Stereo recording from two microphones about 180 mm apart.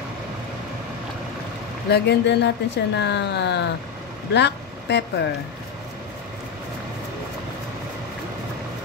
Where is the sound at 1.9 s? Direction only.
70° left (ahead or behind).